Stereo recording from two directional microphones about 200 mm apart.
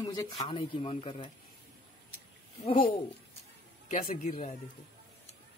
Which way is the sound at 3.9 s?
35° left (ahead or behind).